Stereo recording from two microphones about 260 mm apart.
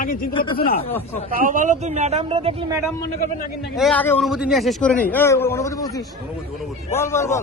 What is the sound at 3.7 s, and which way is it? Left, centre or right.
A man's voice, centre.